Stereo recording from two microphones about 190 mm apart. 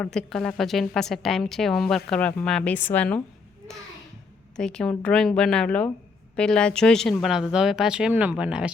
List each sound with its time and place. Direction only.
0.0 s a woman's voice: 5° left (ahead or behind)
4.5 s a woman's voice: 5° left (ahead or behind)